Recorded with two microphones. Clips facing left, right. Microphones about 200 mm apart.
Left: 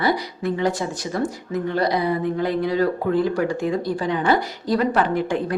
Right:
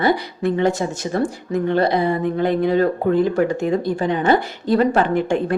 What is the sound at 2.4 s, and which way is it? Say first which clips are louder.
A woman's voice: right 5 dB; 20° right (ahead or behind).